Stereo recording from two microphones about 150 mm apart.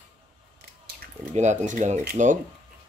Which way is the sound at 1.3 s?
55° right (ahead or behind).